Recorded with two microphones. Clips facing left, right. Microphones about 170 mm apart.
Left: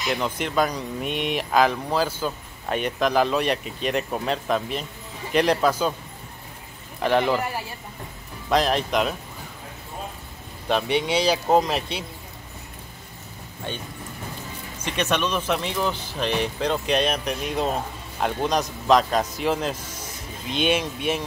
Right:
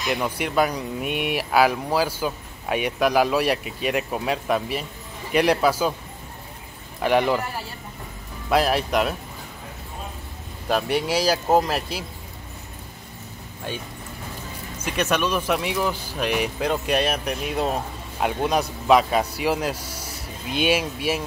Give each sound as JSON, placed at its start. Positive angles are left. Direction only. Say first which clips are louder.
{"t": 0.0, "sound": "speech", "louder": "right 1 dB", "side_deg": -5}
{"t": 7.0, "sound": "speech", "louder": "right 1 dB", "side_deg": -5}
{"t": 8.5, "sound": "speech", "louder": "right 1 dB", "side_deg": -5}
{"t": 10.7, "sound": "speech", "louder": "even", "side_deg": -5}
{"t": 13.7, "sound": "speech", "louder": "right 1 dB", "side_deg": -5}
{"t": 14.9, "sound": "speech", "louder": "right 1 dB", "side_deg": -5}